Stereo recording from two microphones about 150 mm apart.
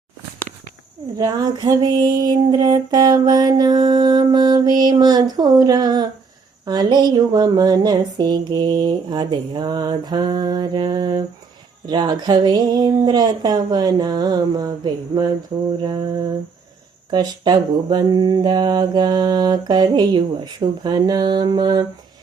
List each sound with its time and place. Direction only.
1.2 s music: 25° right (ahead or behind)
15.8 s a sound: 30° right (ahead or behind)
17.1 s music: 30° right (ahead or behind)